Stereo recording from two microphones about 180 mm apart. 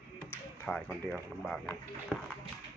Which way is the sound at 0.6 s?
5° left (ahead or behind).